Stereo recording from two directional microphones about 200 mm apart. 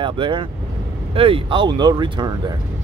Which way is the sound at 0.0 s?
25° right (ahead or behind).